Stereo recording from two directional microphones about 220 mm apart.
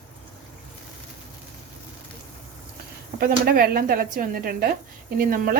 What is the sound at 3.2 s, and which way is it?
Speech, 45° right (ahead or behind).